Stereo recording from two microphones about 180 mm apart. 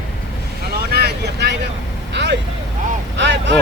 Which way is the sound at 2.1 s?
75° right (ahead or behind).